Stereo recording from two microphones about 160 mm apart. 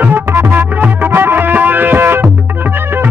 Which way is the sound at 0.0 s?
15° right (ahead or behind).